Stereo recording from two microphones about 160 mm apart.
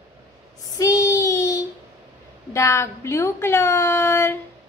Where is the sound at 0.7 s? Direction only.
20° left (ahead or behind).